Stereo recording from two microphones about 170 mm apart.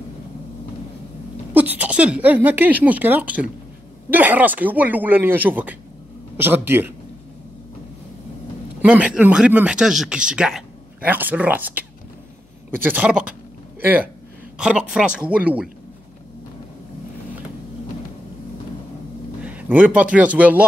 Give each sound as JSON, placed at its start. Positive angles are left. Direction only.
{"t": 1.5, "sound": "speech", "side_deg": -10}
{"t": 8.8, "sound": "speech", "side_deg": -5}
{"t": 19.4, "sound": "a man's voice", "side_deg": -10}